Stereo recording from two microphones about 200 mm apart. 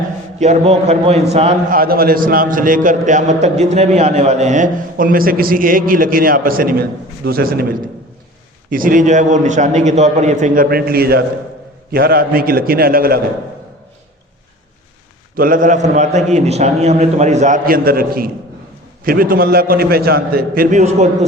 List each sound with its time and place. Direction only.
0.3 s a man's voice: 35° right (ahead or behind)
1.8 s a man's voice: 50° right (ahead or behind)
8.7 s a man's voice: 45° right (ahead or behind)
15.4 s a man's voice: 45° right (ahead or behind)